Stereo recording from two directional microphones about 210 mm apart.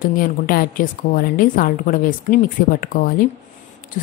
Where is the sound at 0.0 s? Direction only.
40° left (ahead or behind).